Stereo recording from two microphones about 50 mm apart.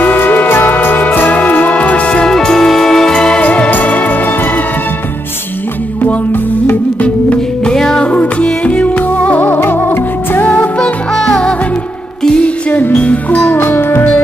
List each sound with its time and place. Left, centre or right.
0.0 s music: left
1.7 s music: left
2.3 s music: centre
3.4 s music: left
6.0 s music: left
7.6 s music: centre
8.1 s music: left
11.2 s music: centre
12.4 s music: left
13.6 s music: left